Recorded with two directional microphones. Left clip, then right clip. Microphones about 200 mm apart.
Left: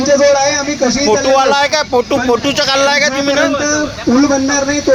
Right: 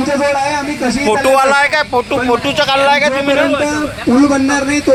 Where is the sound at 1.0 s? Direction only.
15° right (ahead or behind).